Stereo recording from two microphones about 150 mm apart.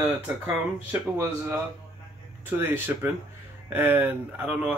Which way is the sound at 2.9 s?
15° right (ahead or behind).